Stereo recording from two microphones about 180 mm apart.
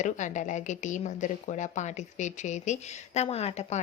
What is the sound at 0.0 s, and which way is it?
A woman's voice, 40° left (ahead or behind).